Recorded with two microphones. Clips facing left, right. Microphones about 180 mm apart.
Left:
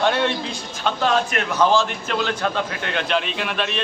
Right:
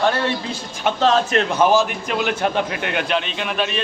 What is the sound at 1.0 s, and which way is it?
Speech, 30° right (ahead or behind).